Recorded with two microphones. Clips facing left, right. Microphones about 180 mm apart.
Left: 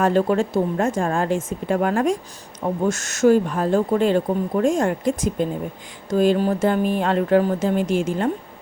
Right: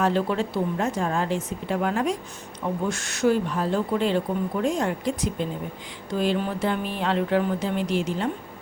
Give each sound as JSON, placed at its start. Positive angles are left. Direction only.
{"t": 0.0, "sound": "speech", "side_deg": 45}